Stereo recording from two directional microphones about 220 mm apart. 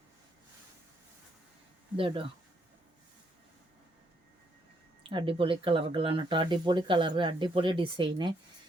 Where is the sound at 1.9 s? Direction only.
25° right (ahead or behind).